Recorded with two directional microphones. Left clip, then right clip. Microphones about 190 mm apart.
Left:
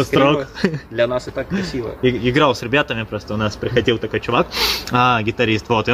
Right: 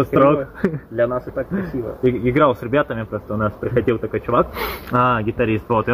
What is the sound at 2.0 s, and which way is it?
Speech, 15° left (ahead or behind).